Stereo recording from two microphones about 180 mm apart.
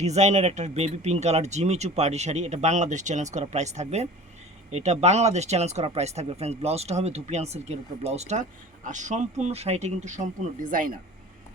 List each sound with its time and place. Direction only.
0.0 s speech: 40° right (ahead or behind)